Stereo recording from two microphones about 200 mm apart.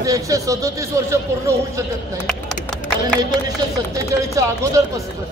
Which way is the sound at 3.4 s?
15° right (ahead or behind).